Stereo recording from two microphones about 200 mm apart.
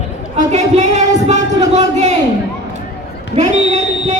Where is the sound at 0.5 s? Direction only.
35° right (ahead or behind).